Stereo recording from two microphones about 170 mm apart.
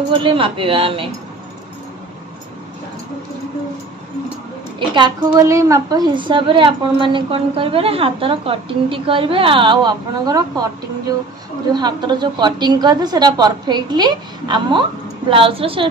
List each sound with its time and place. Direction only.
0.1 s speech: 30° right (ahead or behind)
4.7 s a woman's voice: 25° right (ahead or behind)